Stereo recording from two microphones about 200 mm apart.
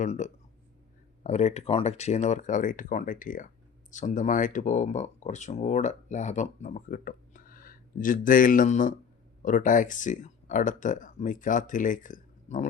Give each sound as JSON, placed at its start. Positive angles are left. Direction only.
{"t": 0.0, "sound": "speech", "side_deg": 35}